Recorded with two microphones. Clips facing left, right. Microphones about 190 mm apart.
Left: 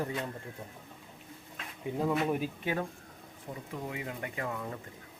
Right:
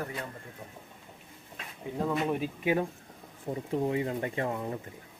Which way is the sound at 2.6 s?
15° right (ahead or behind).